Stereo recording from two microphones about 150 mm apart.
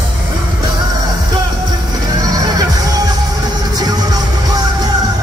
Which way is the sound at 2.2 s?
25° right (ahead or behind).